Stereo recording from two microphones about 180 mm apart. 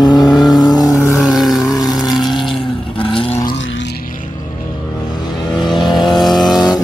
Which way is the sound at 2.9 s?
30° left (ahead or behind).